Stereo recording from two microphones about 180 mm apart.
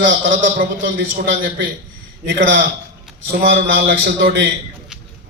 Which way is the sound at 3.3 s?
70° right (ahead or behind).